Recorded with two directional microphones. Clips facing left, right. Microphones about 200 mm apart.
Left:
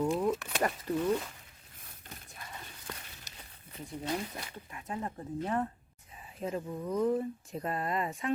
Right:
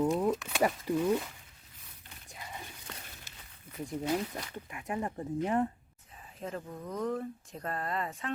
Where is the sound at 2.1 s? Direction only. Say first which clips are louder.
Left 6 dB; 45° left (ahead or behind).